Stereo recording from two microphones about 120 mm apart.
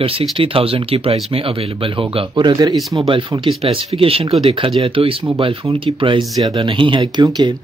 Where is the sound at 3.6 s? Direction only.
50° right (ahead or behind).